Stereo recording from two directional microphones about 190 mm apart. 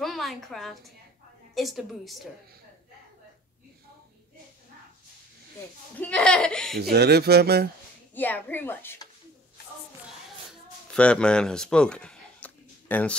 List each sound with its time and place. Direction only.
0.0 s a woman's voice: centre (ahead or behind)
5.9 s speech: 5° left (ahead or behind)
6.8 s speech: 60° right (ahead or behind)
8.1 s a woman's voice: 10° left (ahead or behind)
10.9 s speech: 5° left (ahead or behind)